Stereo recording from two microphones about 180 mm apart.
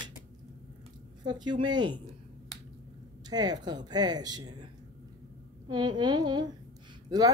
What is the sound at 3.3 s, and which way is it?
Speech, 20° right (ahead or behind).